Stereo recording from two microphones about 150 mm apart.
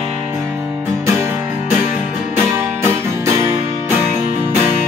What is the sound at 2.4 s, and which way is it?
Music, 15° right (ahead or behind).